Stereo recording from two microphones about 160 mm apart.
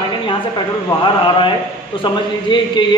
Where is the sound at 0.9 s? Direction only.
30° left (ahead or behind).